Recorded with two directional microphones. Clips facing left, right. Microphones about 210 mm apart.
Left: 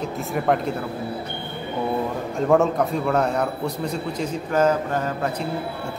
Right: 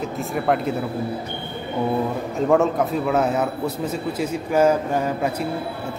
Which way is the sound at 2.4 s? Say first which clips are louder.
Even; centre (ahead or behind).